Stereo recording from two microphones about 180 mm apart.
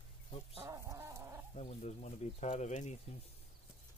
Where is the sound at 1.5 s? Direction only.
40° left (ahead or behind).